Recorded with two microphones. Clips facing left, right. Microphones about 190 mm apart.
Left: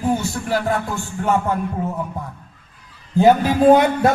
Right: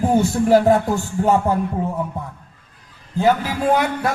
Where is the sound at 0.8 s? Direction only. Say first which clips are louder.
Right 4 dB; 35° right (ahead or behind).